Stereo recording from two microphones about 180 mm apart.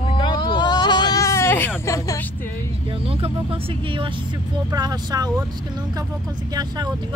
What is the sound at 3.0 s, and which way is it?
Speech, 30° right (ahead or behind).